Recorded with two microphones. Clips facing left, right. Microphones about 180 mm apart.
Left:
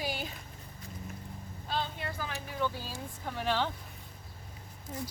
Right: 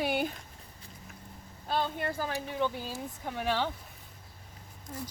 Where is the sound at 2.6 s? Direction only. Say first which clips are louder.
Right 1 dB; 20° right (ahead or behind).